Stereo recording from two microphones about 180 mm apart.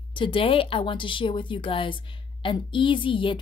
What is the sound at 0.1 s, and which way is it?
A woman's voice, 30° left (ahead or behind).